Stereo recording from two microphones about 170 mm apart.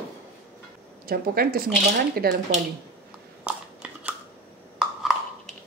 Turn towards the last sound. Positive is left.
turn(degrees=-5)  # may be behind; listen again after turning